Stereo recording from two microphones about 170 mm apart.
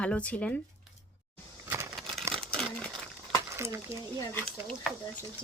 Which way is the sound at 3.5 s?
15° right (ahead or behind).